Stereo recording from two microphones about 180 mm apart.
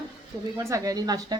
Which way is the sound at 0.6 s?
20° right (ahead or behind).